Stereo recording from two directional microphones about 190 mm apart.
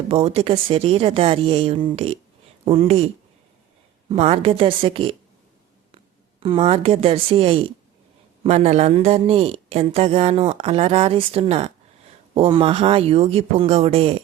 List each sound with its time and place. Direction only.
0.1 s a woman's voice: 30° right (ahead or behind)
4.1 s speech: 30° right (ahead or behind)
6.4 s a woman's voice: 30° right (ahead or behind)